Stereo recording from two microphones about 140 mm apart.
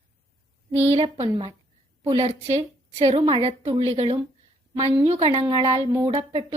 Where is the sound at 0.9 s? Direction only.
45° right (ahead or behind).